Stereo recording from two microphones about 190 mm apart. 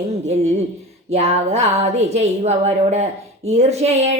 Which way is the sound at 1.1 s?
35° right (ahead or behind).